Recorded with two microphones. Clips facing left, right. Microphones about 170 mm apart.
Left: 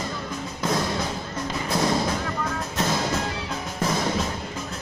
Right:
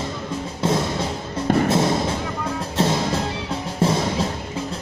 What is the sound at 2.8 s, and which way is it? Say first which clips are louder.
Music: right 4 dB; 30° right (ahead or behind).